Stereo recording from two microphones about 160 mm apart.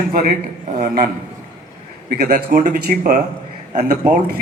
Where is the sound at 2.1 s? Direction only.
80° right.